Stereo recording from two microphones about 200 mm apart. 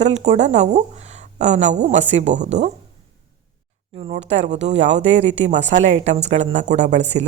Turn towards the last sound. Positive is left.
turn(degrees=-35)  # may be behind; listen again after turning